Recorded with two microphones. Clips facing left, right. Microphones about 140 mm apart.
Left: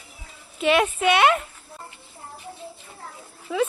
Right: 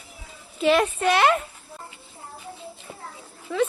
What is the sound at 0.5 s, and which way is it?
Speech, centre (ahead or behind).